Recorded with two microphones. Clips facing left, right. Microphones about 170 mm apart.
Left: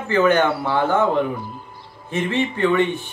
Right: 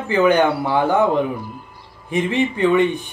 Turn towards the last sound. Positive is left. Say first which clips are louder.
# right 2 dB
turn(degrees=-15)  # may be behind; listen again after turning